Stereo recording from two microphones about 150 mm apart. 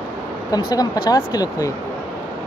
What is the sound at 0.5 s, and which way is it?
Speech, 25° left (ahead or behind).